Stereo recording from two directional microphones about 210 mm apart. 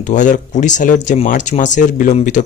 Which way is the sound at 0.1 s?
35° left (ahead or behind).